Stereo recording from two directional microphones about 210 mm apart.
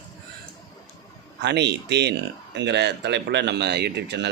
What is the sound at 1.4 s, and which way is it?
Speech, 55° right (ahead or behind).